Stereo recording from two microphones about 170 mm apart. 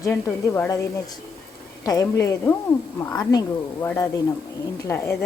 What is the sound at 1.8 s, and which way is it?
A woman's voice, 20° left (ahead or behind).